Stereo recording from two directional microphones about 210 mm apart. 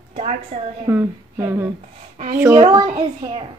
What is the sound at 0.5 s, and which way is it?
Speech, 35° right (ahead or behind).